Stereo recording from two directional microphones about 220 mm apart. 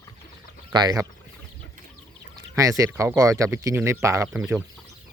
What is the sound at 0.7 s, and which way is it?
Speech, 15° right (ahead or behind).